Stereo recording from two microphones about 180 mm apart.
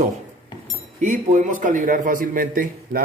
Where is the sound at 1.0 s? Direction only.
45° right (ahead or behind).